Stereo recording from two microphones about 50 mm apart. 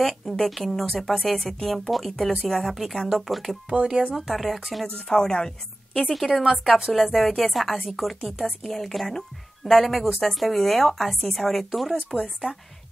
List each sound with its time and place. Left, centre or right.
0.0 s speech: centre
3.8 s speech: centre
4.2 s speech: centre
4.9 s a woman's voice: centre
6.0 s a woman's voice: centre